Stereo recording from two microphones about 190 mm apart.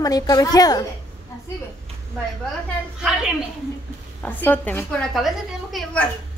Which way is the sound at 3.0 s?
5° right (ahead or behind).